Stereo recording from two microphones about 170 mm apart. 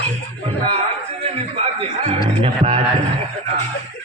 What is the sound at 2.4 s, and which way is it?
Speech, 40° right (ahead or behind).